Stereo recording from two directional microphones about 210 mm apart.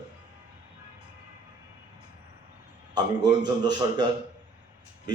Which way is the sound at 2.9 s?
20° right (ahead or behind).